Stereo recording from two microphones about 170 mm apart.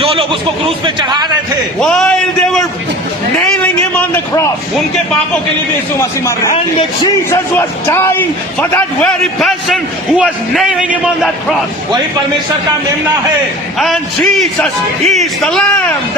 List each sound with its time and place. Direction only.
0.0 s a sound: 35° right (ahead or behind)
0.9 s a man's voice: 25° right (ahead or behind)
1.8 s a man's voice: 5° left (ahead or behind)
3.9 s a sound: 10° left (ahead or behind)
6.0 s a man's voice: 15° left (ahead or behind)
7.9 s a man's voice: 15° left (ahead or behind)
13.7 s a man's voice: centre (ahead or behind)